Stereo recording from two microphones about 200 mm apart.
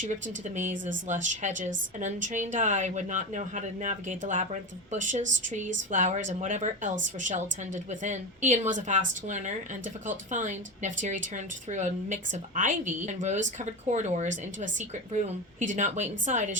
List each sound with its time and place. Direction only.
0.0 s a woman's voice: 40° right (ahead or behind)